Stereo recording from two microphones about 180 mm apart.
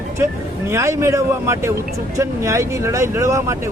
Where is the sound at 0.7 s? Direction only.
15° right (ahead or behind).